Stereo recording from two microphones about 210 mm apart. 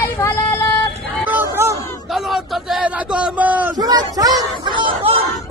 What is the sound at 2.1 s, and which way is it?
A man's voice, centre (ahead or behind).